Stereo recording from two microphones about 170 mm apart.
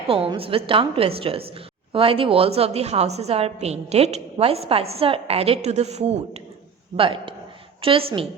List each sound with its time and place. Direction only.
0.1 s a woman's voice: 35° right (ahead or behind)